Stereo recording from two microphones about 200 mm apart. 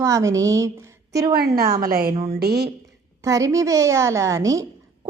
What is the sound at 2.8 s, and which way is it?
A woman's voice, 15° right (ahead or behind).